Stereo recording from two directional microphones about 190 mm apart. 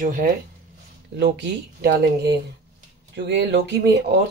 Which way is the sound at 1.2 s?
60° right (ahead or behind).